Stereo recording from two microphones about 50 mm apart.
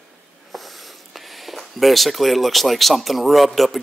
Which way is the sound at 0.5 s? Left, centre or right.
Centre.